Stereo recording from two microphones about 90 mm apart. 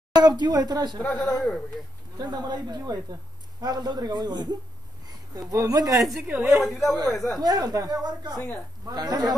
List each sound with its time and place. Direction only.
0.2 s a woman's voice: 50° right (ahead or behind)
1.2 s speech: centre (ahead or behind)
2.1 s a woman's voice: 50° right (ahead or behind)
5.5 s a woman's voice: 40° right (ahead or behind)
5.9 s speech: centre (ahead or behind)
6.2 s a woman's voice: 15° right (ahead or behind)
6.7 s speech: centre (ahead or behind)
7.4 s a woman's voice: 45° right (ahead or behind)